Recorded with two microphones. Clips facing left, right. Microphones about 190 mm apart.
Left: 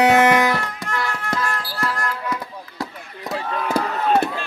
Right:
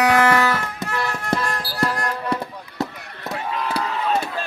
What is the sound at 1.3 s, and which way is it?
Music, 30° right (ahead or behind).